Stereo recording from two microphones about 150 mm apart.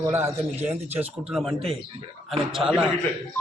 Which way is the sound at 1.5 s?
40° right (ahead or behind).